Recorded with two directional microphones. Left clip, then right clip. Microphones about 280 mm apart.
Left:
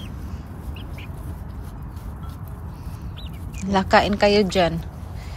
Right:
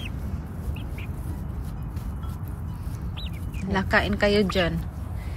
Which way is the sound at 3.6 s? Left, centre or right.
Centre.